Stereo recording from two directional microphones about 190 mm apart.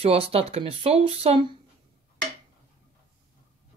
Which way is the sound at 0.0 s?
30° right (ahead or behind).